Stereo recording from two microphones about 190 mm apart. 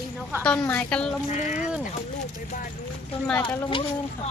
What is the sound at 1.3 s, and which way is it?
Speech, 40° left (ahead or behind).